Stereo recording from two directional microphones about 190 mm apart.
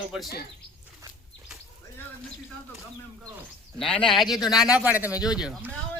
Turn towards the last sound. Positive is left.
turn(degrees=-5)  # may be behind; listen again after turning